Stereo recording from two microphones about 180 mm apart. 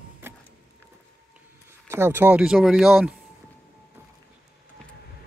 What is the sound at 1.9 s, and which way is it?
Speech, 15° right (ahead or behind).